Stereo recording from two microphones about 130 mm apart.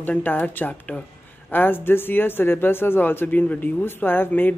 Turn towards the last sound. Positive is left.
turn(degrees=15)  # may be behind; listen again after turning